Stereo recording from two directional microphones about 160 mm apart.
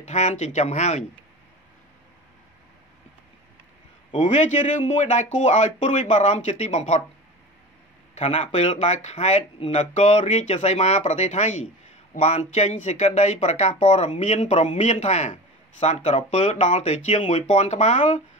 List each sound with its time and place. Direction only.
0.0 s speech: 45° left (ahead or behind)
4.1 s speech: 50° left (ahead or behind)
8.1 s speech: 45° left (ahead or behind)